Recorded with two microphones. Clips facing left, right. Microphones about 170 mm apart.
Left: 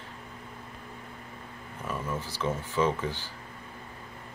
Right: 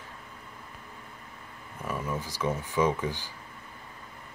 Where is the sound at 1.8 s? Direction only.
10° right (ahead or behind).